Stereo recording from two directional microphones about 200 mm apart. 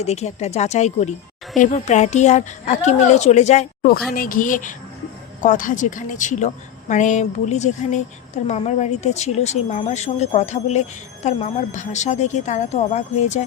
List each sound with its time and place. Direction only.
0.0 s speech: 35° left (ahead or behind)